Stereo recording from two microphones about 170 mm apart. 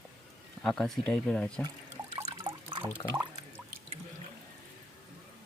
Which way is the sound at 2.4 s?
30° right (ahead or behind).